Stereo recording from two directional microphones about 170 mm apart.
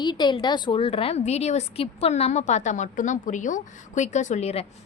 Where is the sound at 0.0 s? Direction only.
25° left (ahead or behind).